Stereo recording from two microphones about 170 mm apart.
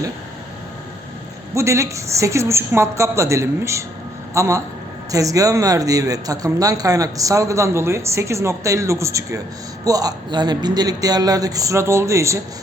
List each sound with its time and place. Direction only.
1.5 s a woman's voice: 15° right (ahead or behind)